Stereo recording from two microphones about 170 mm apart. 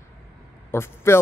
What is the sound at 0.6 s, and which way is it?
Speech, 15° left (ahead or behind).